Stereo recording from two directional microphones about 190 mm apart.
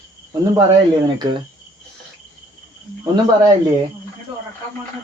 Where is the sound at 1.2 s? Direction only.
25° right (ahead or behind).